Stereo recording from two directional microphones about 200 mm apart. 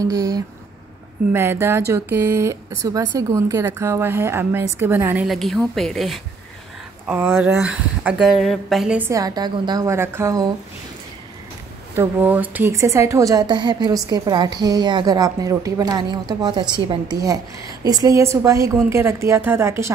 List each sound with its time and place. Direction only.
0.0 s speech: 15° right (ahead or behind); by 6.2 s centre (ahead or behind)
7.1 s speech: 10° right (ahead or behind)
11.9 s a woman's voice: 10° right (ahead or behind)